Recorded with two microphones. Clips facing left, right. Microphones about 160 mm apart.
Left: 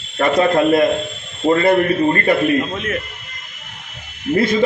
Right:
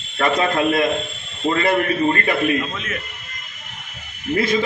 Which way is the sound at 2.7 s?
55° left (ahead or behind).